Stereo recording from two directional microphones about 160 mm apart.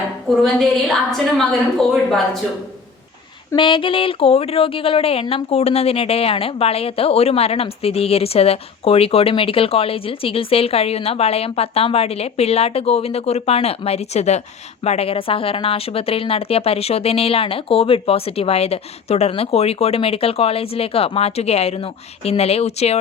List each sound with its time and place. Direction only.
0.3 s a woman's voice: centre (ahead or behind)
3.5 s a woman's voice: 30° left (ahead or behind)